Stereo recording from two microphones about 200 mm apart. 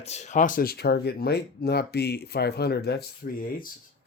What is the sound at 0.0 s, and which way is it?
Speech, 35° left (ahead or behind).